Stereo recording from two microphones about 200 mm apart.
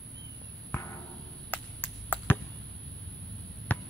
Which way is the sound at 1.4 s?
10° left (ahead or behind).